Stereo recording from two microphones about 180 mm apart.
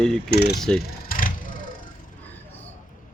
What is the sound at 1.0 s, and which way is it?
Vehicle, 50° left (ahead or behind).